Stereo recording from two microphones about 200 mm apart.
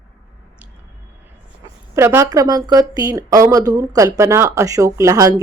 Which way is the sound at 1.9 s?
15° right (ahead or behind).